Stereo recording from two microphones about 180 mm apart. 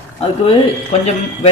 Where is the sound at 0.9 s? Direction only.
35° left (ahead or behind).